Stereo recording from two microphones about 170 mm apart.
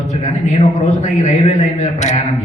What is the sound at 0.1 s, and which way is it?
A man's voice, 45° left (ahead or behind).